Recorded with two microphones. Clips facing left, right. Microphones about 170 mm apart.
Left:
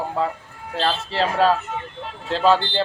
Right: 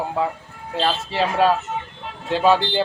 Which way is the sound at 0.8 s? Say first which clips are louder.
Right 1 dB; 15° right (ahead or behind).